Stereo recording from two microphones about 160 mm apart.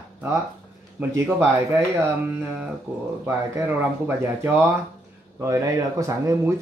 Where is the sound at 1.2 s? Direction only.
15° right (ahead or behind).